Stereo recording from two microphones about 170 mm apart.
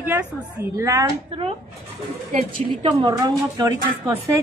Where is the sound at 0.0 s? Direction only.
10° right (ahead or behind).